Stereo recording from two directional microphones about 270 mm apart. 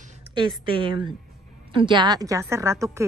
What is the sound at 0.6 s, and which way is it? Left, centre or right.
A woman's voice, centre.